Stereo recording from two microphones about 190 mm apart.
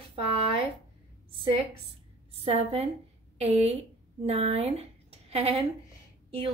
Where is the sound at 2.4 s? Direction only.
30° right (ahead or behind).